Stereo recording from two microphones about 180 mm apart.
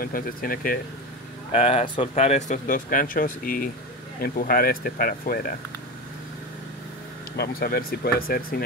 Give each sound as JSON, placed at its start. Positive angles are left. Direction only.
{"t": 0.0, "sound": "speech", "side_deg": 55}
{"t": 1.5, "sound": "speech", "side_deg": 35}
{"t": 7.3, "sound": "speech", "side_deg": 55}